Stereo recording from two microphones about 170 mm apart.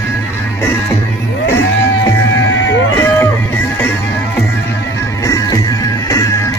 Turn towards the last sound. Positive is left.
turn(degrees=20)  # may be behind; listen again after turning